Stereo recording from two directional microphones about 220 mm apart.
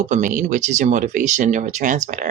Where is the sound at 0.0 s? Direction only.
35° right (ahead or behind).